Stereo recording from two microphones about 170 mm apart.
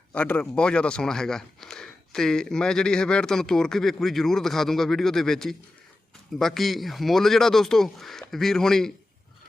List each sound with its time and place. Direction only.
0.1 s speech: 10° left (ahead or behind)